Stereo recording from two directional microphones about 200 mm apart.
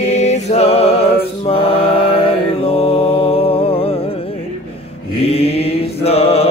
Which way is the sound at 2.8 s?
30° left (ahead or behind).